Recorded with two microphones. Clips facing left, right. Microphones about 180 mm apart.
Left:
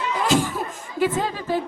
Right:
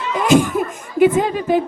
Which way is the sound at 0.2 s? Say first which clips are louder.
Right 8 dB; 20° right (ahead or behind).